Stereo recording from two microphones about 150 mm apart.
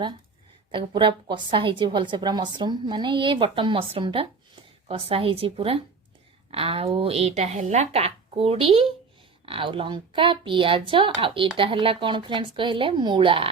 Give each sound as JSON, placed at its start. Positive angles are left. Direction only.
{"t": 0.7, "sound": "a woman's voice", "side_deg": -35}